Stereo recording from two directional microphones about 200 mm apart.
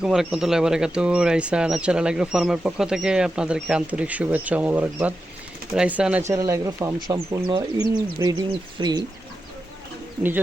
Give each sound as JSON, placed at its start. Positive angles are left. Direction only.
{"t": 0.0, "sound": "speech", "side_deg": -5}